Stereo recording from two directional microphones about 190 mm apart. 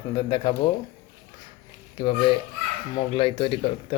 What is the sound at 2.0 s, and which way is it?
Speech, 25° left (ahead or behind).